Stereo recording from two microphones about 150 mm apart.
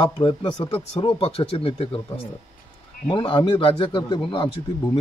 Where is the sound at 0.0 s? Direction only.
30° left (ahead or behind).